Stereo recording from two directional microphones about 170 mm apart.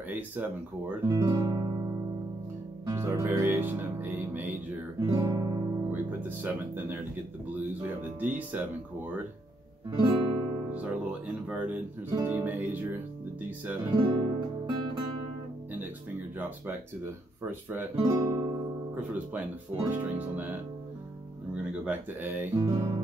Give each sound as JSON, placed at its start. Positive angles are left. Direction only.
{"t": 0.1, "sound": "speech", "side_deg": -10}
{"t": 2.9, "sound": "speech", "side_deg": -15}
{"t": 5.0, "sound": "speech", "side_deg": -20}
{"t": 9.8, "sound": "speech", "side_deg": -25}
{"t": 11.4, "sound": "speech", "side_deg": -10}
{"t": 13.8, "sound": "speech", "side_deg": -25}
{"t": 16.3, "sound": "speech", "side_deg": -10}
{"t": 18.9, "sound": "speech", "side_deg": -10}
{"t": 21.8, "sound": "speech", "side_deg": -10}